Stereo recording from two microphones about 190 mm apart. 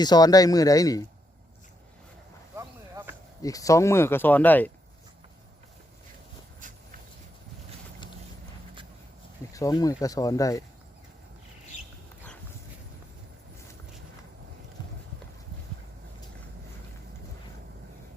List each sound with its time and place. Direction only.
0.0 s speech: 20° left (ahead or behind)
2.6 s a sound: 15° right (ahead or behind)
3.4 s speech: 15° left (ahead or behind)
9.5 s speech: 20° left (ahead or behind)